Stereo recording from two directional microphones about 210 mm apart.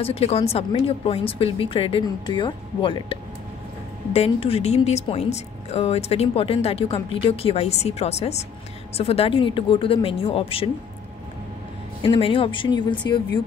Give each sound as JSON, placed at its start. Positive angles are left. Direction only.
{"t": 0.0, "sound": "speech", "side_deg": 30}
{"t": 12.0, "sound": "speech", "side_deg": 25}